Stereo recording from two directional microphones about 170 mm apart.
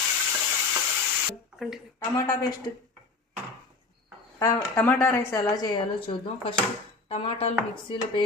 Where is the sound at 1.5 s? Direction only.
Centre (ahead or behind).